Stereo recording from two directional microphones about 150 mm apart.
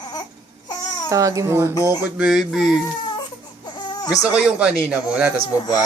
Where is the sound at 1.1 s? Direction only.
20° right (ahead or behind).